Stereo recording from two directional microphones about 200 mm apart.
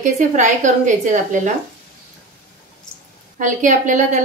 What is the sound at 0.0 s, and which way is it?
A woman's voice, 40° right (ahead or behind).